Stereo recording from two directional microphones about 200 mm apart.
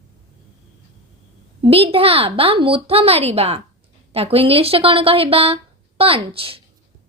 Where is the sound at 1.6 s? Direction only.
30° right (ahead or behind).